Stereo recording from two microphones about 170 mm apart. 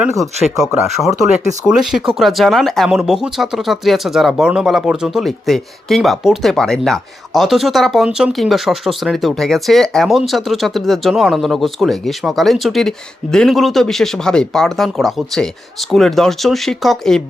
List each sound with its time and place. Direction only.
0.0 s speech: centre (ahead or behind)